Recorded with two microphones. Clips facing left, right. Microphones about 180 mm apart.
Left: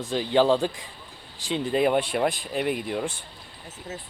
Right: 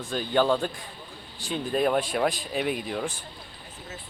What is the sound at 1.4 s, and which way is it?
Speech, 90° left.